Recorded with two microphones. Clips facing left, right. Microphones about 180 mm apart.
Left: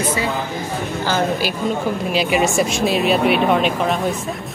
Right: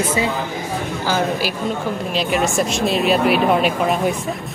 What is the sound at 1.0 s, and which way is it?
Speech, 5° right (ahead or behind).